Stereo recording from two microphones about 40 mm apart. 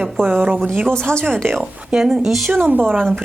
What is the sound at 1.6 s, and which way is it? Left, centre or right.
Speech, centre.